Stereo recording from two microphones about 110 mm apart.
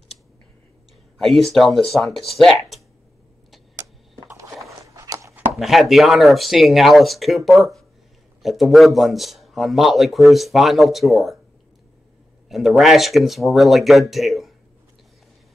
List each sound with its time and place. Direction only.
1.1 s a man's voice: centre (ahead or behind)
4.3 s a sound: 30° right (ahead or behind)
5.5 s a man's voice: centre (ahead or behind)
12.4 s a man's voice: centre (ahead or behind)